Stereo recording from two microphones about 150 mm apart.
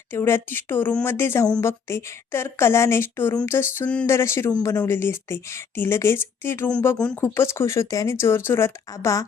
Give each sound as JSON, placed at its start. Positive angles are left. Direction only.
{"t": 0.1, "sound": "speech", "side_deg": 15}
{"t": 7.2, "sound": "speech", "side_deg": 15}